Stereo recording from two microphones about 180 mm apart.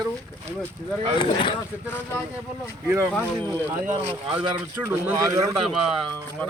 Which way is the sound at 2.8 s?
15° right (ahead or behind).